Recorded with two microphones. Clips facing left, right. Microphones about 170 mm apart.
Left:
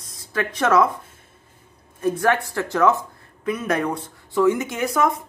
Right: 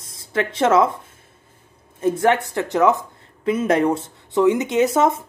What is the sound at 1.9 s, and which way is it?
Speech, 20° right (ahead or behind).